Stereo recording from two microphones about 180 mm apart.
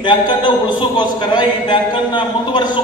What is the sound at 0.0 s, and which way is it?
A man's voice, 25° left (ahead or behind).